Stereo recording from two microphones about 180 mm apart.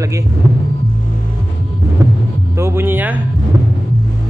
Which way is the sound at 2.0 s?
15° right (ahead or behind).